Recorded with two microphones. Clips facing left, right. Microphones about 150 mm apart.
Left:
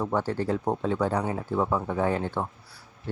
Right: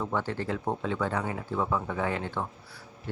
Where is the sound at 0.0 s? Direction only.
40° left (ahead or behind).